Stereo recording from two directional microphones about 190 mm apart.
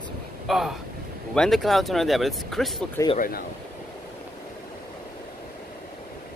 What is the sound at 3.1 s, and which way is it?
Speech, 50° left (ahead or behind).